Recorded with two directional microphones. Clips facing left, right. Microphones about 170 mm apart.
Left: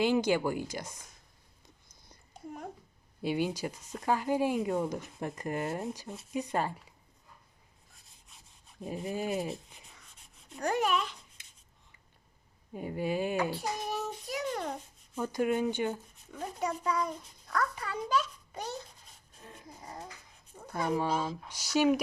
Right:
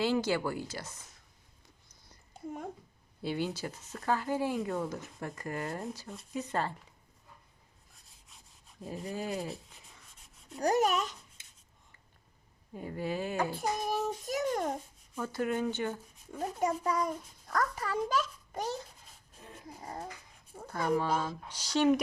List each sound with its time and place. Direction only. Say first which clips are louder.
0.0 s speech: left 3 dB; 15° left (ahead or behind)
3.2 s speech: left 3 dB; 15° left (ahead or behind)
8.3 s sawing: even; centre (ahead or behind)
8.8 s rub: left 3 dB; 20° left (ahead or behind)
10.6 s speech: right 2 dB; 40° right (ahead or behind)
12.7 s speech: left 3 dB; 15° left (ahead or behind)
13.5 s a child's voice: right 2 dB; 50° right (ahead or behind)
15.2 s speech: left 3 dB; 15° left (ahead or behind)
16.4 s a child's voice: right 3 dB; 45° right (ahead or behind)
20.7 s speech: even; 15° left (ahead or behind)